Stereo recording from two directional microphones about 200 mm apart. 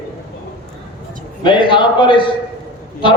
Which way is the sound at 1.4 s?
25° left (ahead or behind).